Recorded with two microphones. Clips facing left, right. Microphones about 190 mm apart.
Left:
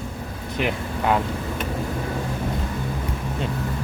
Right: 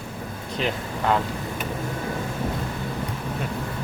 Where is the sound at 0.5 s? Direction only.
15° left (ahead or behind).